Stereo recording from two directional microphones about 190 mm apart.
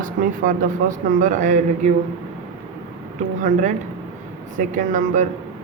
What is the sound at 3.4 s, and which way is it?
Speech, 40° right (ahead or behind).